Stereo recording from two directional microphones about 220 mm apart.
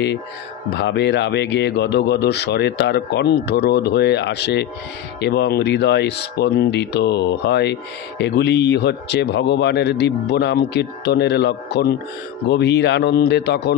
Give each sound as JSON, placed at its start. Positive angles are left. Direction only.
{"t": 0.7, "sound": "speech", "side_deg": 50}